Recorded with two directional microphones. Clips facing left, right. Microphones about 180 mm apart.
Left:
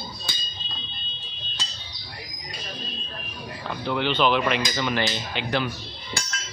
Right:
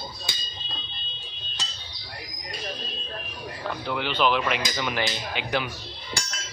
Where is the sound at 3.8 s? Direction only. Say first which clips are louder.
Left 3 dB; 5° right (ahead or behind).